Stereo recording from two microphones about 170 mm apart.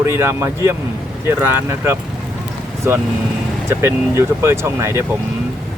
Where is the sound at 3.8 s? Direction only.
15° right (ahead or behind).